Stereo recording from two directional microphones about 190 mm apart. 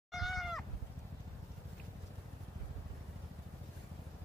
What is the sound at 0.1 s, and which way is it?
Cat, centre (ahead or behind).